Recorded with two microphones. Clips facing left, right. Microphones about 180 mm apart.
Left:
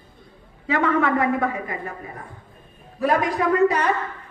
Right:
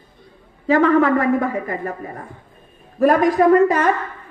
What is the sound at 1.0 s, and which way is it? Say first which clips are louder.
Speech: right 4 dB; 40° right (ahead or behind).